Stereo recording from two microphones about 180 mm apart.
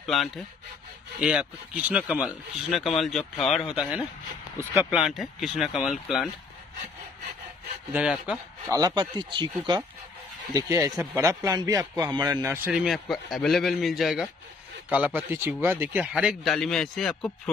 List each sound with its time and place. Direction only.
0.0 s speech: centre (ahead or behind)
4.6 s a man's voice: 15° right (ahead or behind)
5.0 s speech: centre (ahead or behind)
7.9 s speech: 5° right (ahead or behind)
8.6 s speech: 20° right (ahead or behind)
10.5 s speech: 20° right (ahead or behind)
12.6 s a man's voice: 5° right (ahead or behind)